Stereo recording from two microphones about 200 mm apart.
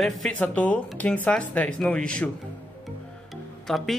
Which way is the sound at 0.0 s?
5° left (ahead or behind).